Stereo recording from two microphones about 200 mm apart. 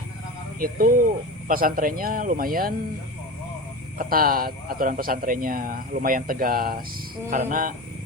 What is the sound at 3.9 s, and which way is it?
A man's voice, 45° right (ahead or behind).